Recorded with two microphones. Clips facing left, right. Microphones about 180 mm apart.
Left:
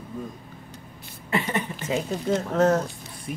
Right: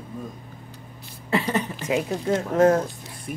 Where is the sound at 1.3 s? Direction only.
35° right (ahead or behind).